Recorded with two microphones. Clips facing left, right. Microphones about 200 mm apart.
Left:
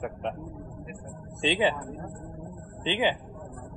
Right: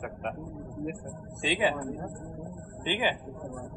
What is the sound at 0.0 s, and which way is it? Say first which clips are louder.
Speech: left 3 dB; 25° left (ahead or behind).